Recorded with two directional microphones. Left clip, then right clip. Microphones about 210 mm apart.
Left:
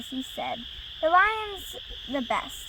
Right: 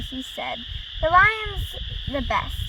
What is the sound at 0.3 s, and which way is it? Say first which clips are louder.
Speech: right 3 dB; 10° right (ahead or behind).